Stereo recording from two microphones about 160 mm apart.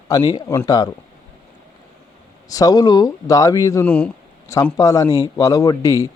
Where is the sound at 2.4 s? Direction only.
20° left (ahead or behind).